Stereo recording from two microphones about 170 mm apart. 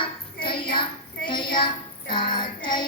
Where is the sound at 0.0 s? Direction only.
30° left (ahead or behind).